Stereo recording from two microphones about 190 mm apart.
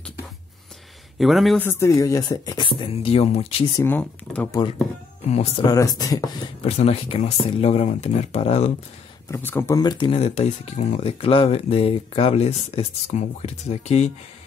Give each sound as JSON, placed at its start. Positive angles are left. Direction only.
{"t": 1.1, "sound": "speech", "side_deg": 0}
{"t": 1.7, "sound": "speech", "side_deg": 15}
{"t": 3.7, "sound": "speech", "side_deg": 10}
{"t": 4.5, "sound": "speech", "side_deg": 20}
{"t": 6.6, "sound": "speech", "side_deg": 30}
{"t": 9.3, "sound": "speech", "side_deg": 10}